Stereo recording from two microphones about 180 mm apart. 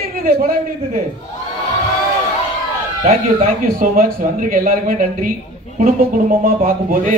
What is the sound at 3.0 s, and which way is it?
Speech, 50° right (ahead or behind).